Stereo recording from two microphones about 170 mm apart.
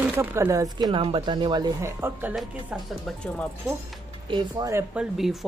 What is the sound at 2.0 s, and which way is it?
Speech, 10° right (ahead or behind).